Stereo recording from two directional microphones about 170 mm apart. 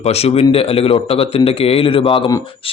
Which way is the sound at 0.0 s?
35° left (ahead or behind).